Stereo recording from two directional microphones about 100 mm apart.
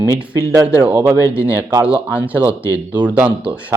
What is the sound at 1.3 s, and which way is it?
Speech, 10° right (ahead or behind).